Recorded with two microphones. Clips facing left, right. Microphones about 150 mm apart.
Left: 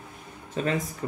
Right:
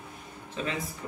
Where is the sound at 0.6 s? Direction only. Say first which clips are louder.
Left 6 dB; 45° left (ahead or behind).